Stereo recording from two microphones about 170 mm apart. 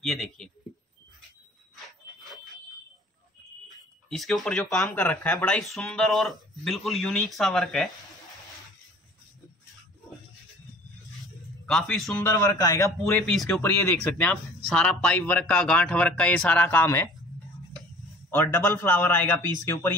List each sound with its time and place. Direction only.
0.0 s speech: centre (ahead or behind)
1.9 s a sound: centre (ahead or behind)
4.1 s speech: centre (ahead or behind)
11.1 s a sound: centre (ahead or behind)
12.2 s speech: 15° left (ahead or behind)
13.3 s speech: centre (ahead or behind)
13.6 s speech: 15° left (ahead or behind)
18.3 s speech: 10° left (ahead or behind)